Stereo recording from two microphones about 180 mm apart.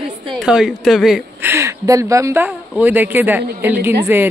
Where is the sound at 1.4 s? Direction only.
15° right (ahead or behind).